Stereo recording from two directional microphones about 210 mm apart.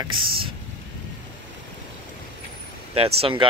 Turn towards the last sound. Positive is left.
turn(degrees=-25)  # may be behind; listen again after turning